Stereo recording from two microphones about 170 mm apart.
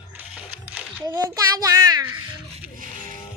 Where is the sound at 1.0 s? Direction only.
20° right (ahead or behind).